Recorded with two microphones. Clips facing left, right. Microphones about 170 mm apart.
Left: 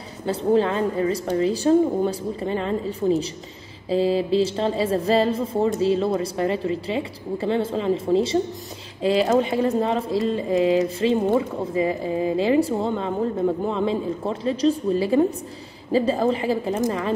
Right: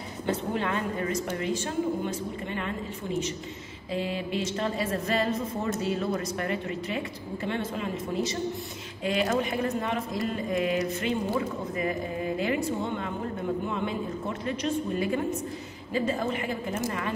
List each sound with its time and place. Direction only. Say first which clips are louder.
0.3 s a woman's voice: left 9 dB; 30° left (ahead or behind)